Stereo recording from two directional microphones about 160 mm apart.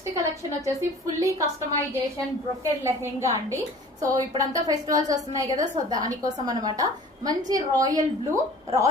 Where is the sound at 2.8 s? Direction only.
15° right (ahead or behind).